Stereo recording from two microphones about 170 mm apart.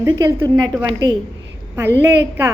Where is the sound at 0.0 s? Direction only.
15° right (ahead or behind).